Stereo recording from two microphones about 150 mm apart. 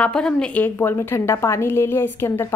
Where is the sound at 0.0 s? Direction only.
5° left (ahead or behind).